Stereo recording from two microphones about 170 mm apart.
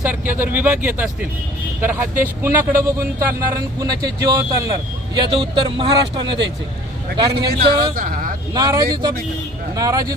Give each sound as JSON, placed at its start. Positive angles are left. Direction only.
{"t": 0.0, "sound": "speech", "side_deg": -10}
{"t": 7.3, "sound": "a man's voice", "side_deg": -70}
{"t": 7.9, "sound": "speech", "side_deg": -55}
{"t": 8.5, "sound": "speech", "side_deg": -25}